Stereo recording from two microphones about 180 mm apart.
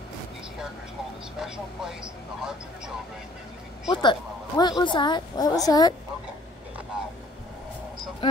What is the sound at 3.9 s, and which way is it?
A woman's voice, 25° left (ahead or behind).